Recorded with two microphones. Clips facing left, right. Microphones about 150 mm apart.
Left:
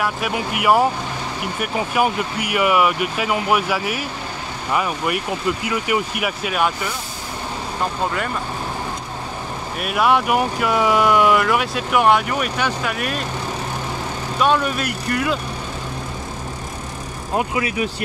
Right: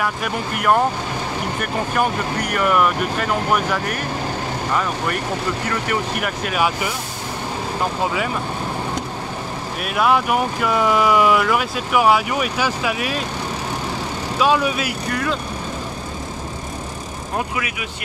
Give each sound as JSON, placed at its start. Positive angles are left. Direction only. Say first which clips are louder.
{"t": 0.0, "sound": "speech", "louder": "left 1 dB", "side_deg": 5}
{"t": 9.8, "sound": "speech", "louder": "even", "side_deg": 0}
{"t": 14.4, "sound": "speech", "louder": "even", "side_deg": -5}
{"t": 17.4, "sound": "speech", "louder": "left 5 dB", "side_deg": 30}